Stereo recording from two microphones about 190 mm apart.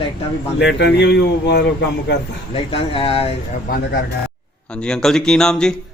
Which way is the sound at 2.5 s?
30° left (ahead or behind).